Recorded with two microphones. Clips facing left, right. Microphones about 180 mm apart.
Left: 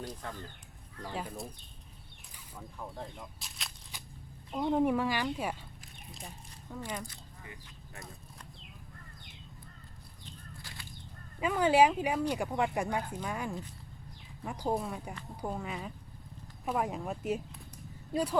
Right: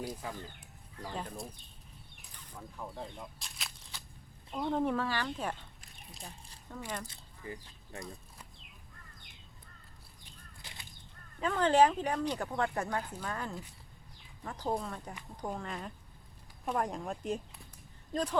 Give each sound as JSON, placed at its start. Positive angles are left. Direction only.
{"t": 0.0, "sound": "speech", "side_deg": -5}
{"t": 1.1, "sound": "speech", "side_deg": 5}
{"t": 3.9, "sound": "a sound", "side_deg": 15}
{"t": 4.5, "sound": "speech", "side_deg": 10}
{"t": 7.1, "sound": "speech", "side_deg": -35}
{"t": 10.6, "sound": "a sound", "side_deg": -20}
{"t": 11.3, "sound": "speech", "side_deg": 10}